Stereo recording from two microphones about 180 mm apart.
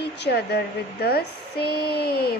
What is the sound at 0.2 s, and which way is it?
Speech, 65° left (ahead or behind).